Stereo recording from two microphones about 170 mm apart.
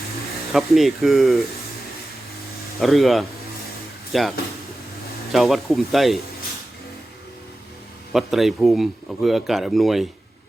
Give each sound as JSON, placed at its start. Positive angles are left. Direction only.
{"t": 0.5, "sound": "speech", "side_deg": 0}
{"t": 2.8, "sound": "speech", "side_deg": 0}
{"t": 8.1, "sound": "speech", "side_deg": 0}